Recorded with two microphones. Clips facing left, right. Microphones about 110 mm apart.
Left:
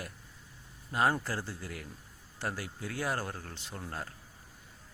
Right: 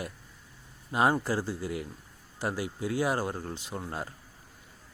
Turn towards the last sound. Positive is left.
turn(degrees=-15)  # may be behind; listen again after turning